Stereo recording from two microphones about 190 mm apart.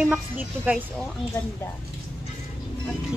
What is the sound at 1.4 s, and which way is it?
Speech, 15° left (ahead or behind).